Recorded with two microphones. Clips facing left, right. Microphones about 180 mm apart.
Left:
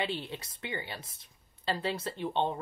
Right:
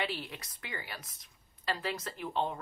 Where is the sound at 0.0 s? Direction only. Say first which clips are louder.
Left 2 dB; 25° left (ahead or behind).